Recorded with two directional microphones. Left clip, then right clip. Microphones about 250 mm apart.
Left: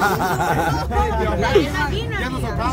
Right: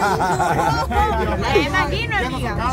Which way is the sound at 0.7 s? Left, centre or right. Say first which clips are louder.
Right 3 dB; right.